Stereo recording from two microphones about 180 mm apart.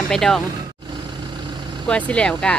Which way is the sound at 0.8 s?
25° right (ahead or behind).